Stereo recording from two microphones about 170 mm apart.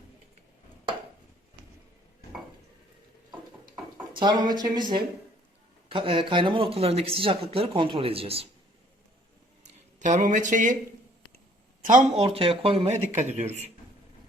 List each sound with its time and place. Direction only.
4.1 s speech: 30° right (ahead or behind)
10.0 s speech: 45° right (ahead or behind)
11.8 s speech: 50° right (ahead or behind)
12.2 s speech: 35° right (ahead or behind)